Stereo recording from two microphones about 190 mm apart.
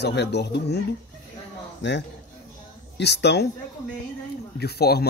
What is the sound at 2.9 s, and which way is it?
Speech, 65° left (ahead or behind).